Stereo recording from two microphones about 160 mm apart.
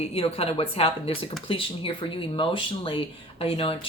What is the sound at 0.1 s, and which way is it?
A woman's voice, 35° left (ahead or behind).